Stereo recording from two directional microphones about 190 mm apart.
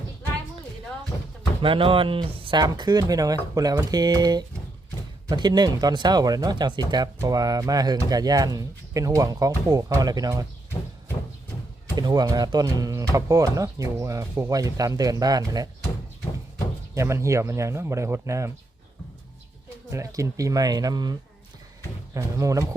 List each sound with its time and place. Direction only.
1.6 s speech: 25° right (ahead or behind)
11.9 s speech: 20° right (ahead or behind)
16.9 s speech: 15° right (ahead or behind)
19.9 s speech: 15° right (ahead or behind)